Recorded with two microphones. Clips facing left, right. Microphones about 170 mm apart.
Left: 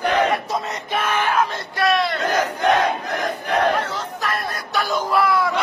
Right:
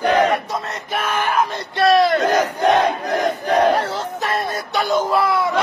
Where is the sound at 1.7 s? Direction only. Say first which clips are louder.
Right 6 dB; 35° right (ahead or behind).